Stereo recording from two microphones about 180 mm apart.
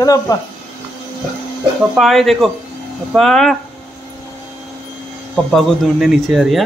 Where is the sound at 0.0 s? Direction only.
20° left (ahead or behind).